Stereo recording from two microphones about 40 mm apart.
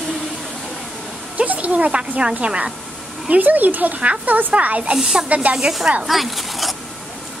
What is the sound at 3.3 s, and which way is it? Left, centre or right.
Speech, right.